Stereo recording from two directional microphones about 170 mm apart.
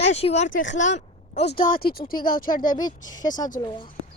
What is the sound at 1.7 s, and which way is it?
A woman's voice, 60° left (ahead or behind).